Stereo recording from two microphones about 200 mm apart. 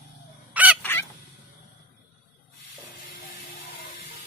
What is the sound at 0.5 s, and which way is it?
Fowl, 5° right (ahead or behind).